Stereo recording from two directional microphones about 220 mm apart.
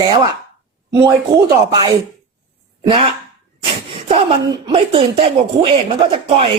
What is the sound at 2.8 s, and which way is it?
Speech, 25° right (ahead or behind).